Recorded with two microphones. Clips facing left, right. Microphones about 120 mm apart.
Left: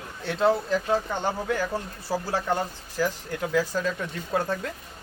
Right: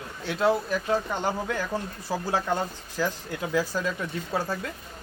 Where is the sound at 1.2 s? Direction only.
15° right (ahead or behind).